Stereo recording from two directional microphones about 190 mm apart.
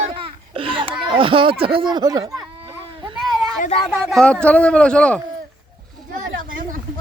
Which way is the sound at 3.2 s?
Centre (ahead or behind).